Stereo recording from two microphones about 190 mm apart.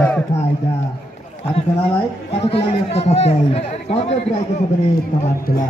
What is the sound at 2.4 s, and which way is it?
A man's voice, 30° left (ahead or behind).